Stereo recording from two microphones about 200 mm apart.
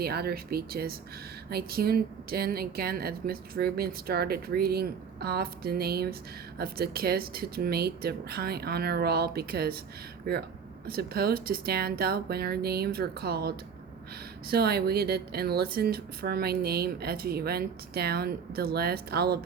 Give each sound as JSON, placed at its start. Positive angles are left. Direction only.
{"t": 0.0, "sound": "speech", "side_deg": -50}
{"t": 14.5, "sound": "speech", "side_deg": -50}